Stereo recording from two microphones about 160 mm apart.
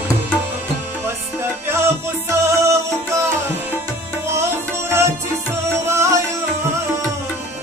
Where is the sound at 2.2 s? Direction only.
15° right (ahead or behind).